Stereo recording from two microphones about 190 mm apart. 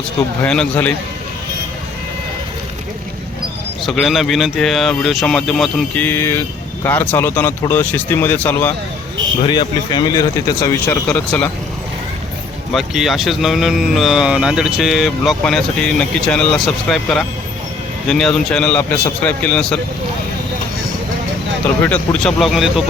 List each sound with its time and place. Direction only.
0.4 s speech: 5° left (ahead or behind)
3.8 s speech: centre (ahead or behind)
9.4 s speech: 25° left (ahead or behind)
12.7 s speech: centre (ahead or behind)
21.8 s speech: 5° left (ahead or behind)